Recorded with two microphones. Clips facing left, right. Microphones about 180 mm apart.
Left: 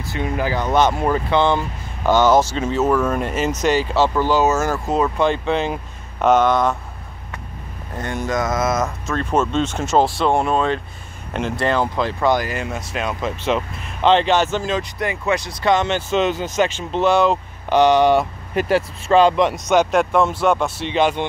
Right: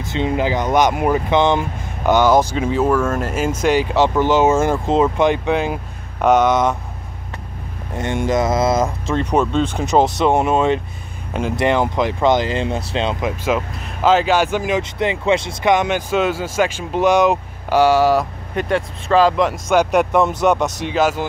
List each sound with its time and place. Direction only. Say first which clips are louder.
0.1 s speech: right 3 dB; 20° right (ahead or behind)
2.9 s speech: right 1 dB; 10° left (ahead or behind)
3.2 s speech: right 1 dB; 5° right (ahead or behind)
8.0 s speech: right 4 dB; 25° right (ahead or behind)
13.2 s speech: right 1 dB; 10° right (ahead or behind)
19.7 s speech: right 2 dB; 15° right (ahead or behind)
20.9 s speech: even; 5° right (ahead or behind)